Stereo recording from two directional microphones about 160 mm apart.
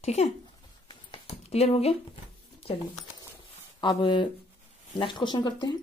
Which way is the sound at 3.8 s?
30° left (ahead or behind).